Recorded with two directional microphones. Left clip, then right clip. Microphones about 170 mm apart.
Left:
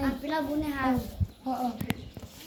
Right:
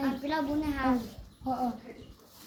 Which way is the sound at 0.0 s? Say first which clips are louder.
Left 1 dB; 15° right (ahead or behind).